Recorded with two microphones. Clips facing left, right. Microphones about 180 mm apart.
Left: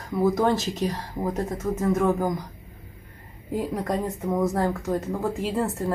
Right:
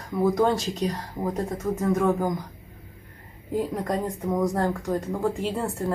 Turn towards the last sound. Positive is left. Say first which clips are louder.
# left 1 dB
turn(degrees=0)  # may be behind; listen again after turning